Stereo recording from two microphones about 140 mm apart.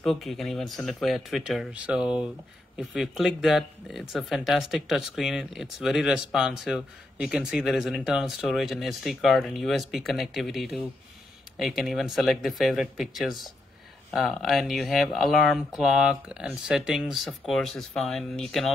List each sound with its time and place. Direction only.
0.0 s speech: centre (ahead or behind)